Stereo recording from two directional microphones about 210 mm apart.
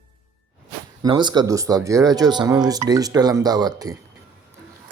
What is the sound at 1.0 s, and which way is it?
Speech, 20° right (ahead or behind).